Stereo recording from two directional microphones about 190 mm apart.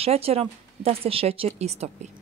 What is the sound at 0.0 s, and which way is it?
Speech, 30° right (ahead or behind).